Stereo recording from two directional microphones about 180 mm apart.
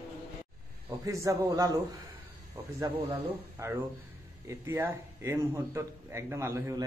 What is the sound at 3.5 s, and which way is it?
A man's voice, 15° right (ahead or behind).